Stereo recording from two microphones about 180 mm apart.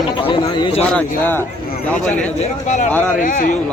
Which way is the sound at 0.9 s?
10° left (ahead or behind).